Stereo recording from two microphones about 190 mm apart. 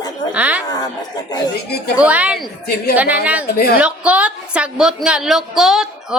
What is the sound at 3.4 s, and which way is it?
Speech, 55° left (ahead or behind).